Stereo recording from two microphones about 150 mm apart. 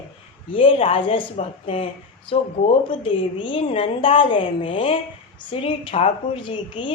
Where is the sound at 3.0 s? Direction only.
35° left (ahead or behind).